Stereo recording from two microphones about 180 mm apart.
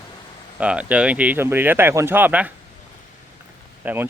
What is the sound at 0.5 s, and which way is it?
A man's voice, 5° right (ahead or behind).